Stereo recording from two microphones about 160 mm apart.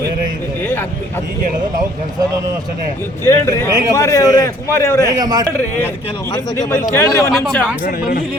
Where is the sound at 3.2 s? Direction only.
15° left (ahead or behind).